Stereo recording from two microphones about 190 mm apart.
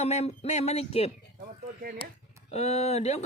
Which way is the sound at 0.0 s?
35° left (ahead or behind).